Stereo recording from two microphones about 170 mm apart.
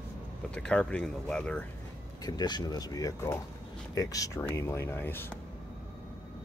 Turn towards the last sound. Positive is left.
turn(degrees=10)  # may be behind; listen again after turning